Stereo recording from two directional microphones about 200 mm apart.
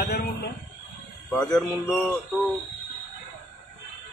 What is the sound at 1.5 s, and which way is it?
Speech, centre (ahead or behind).